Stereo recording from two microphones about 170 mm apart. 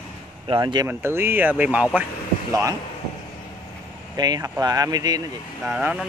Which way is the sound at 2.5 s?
20° right (ahead or behind).